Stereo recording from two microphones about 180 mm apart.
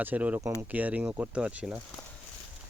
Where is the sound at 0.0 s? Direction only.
10° right (ahead or behind).